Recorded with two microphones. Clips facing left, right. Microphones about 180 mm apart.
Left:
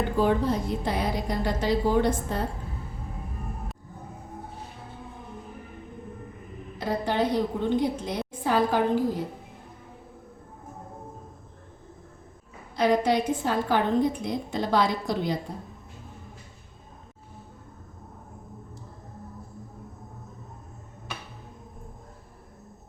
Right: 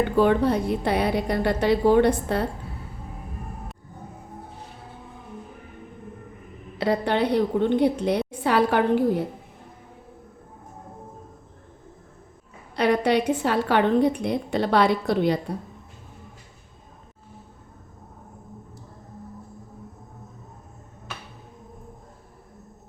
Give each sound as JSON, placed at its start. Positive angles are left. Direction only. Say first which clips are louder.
{"t": 0.2, "sound": "a woman's voice", "louder": "right 4 dB", "side_deg": -65}
{"t": 6.7, "sound": "a woman's voice", "louder": "right 4 dB", "side_deg": -70}
{"t": 12.7, "sound": "a woman's voice", "louder": "right 2 dB", "side_deg": -65}